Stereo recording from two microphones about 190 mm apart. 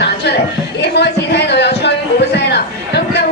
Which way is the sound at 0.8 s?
60° left (ahead or behind).